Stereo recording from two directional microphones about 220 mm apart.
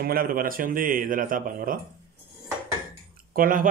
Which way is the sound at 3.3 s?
40° right (ahead or behind).